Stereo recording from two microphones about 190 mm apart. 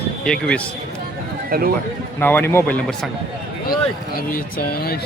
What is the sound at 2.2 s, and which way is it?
Speech, 10° left (ahead or behind).